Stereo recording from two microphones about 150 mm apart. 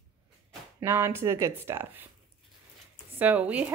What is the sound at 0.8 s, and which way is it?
Speech, 15° right (ahead or behind).